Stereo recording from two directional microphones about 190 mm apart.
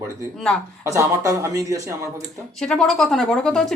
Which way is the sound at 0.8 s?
15° right (ahead or behind).